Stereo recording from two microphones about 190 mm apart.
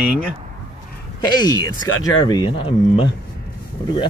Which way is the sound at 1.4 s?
20° left (ahead or behind).